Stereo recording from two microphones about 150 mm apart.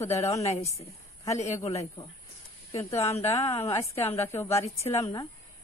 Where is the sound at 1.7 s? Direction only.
20° left (ahead or behind).